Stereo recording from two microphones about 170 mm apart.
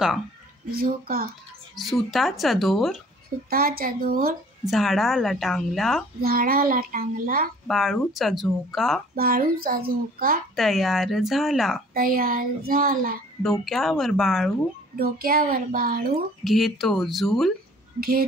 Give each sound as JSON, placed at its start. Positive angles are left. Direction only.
{"t": 0.7, "sound": "a child's voice", "side_deg": -60}
{"t": 1.8, "sound": "a woman's voice", "side_deg": 0}
{"t": 3.4, "sound": "a child's voice", "side_deg": -60}
{"t": 4.6, "sound": "a woman's voice", "side_deg": 0}
{"t": 6.2, "sound": "a child's voice", "side_deg": -60}
{"t": 7.6, "sound": "a woman's voice", "side_deg": 0}
{"t": 9.1, "sound": "a child's voice", "side_deg": -60}
{"t": 10.5, "sound": "a woman's voice", "side_deg": 0}
{"t": 11.9, "sound": "a child's voice", "side_deg": -60}
{"t": 13.4, "sound": "a woman's voice", "side_deg": 0}
{"t": 15.0, "sound": "a child's voice", "side_deg": -60}
{"t": 16.4, "sound": "a woman's voice", "side_deg": 0}